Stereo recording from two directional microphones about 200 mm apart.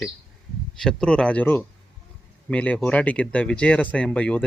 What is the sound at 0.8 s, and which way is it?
A man's voice, 5° left (ahead or behind).